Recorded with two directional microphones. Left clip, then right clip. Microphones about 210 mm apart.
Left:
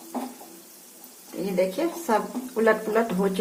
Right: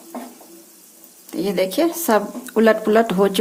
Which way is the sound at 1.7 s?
55° right (ahead or behind).